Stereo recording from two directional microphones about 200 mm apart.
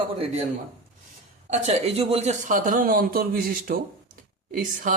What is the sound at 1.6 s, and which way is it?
A man's voice, 30° right (ahead or behind).